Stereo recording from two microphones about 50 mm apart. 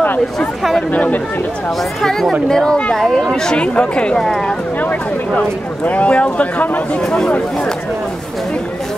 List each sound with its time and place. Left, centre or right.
0.0 s chatter: left
0.9 s speech: left
2.0 s speech: centre
4.2 s speech: centre
5.9 s speech: left
7.0 s speech: centre